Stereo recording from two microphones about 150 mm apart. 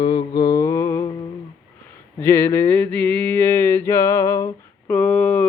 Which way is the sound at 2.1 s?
15° left (ahead or behind).